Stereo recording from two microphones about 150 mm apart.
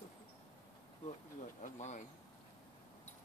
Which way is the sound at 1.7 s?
50° left (ahead or behind).